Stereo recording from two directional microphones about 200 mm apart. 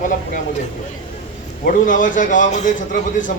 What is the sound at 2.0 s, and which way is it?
Speech, 40° left (ahead or behind).